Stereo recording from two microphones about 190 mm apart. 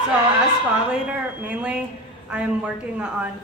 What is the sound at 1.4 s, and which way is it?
A woman's voice, 5° right (ahead or behind).